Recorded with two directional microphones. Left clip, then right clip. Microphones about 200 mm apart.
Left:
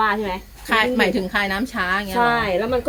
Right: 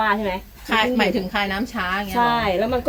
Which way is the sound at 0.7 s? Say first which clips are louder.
Left 1 dB; 15° left (ahead or behind).